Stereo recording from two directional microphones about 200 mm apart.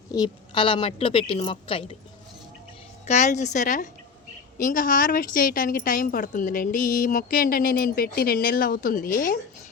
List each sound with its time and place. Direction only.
0.1 s a woman's voice: 20° left (ahead or behind)
3.1 s a woman's voice: 35° left (ahead or behind)